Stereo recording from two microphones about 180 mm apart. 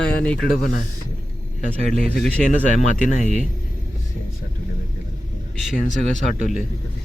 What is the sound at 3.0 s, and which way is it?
Speech, 40° left (ahead or behind).